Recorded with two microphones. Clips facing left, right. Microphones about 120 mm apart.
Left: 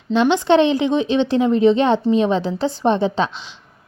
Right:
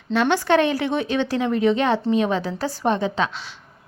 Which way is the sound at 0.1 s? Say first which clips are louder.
Left 4 dB; 20° left (ahead or behind).